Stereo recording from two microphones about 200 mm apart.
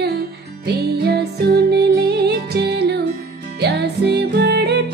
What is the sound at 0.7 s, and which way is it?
Music, 55° right (ahead or behind).